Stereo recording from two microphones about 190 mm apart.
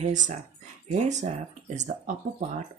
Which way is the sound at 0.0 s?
40° right (ahead or behind).